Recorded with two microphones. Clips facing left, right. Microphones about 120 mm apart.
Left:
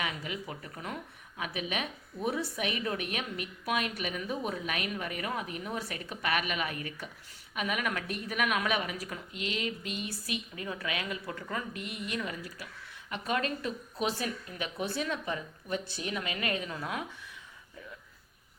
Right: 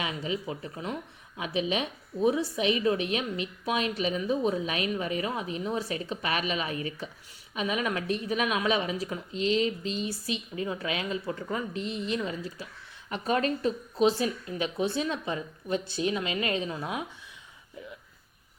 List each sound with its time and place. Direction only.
0.0 s a woman's voice: 25° right (ahead or behind)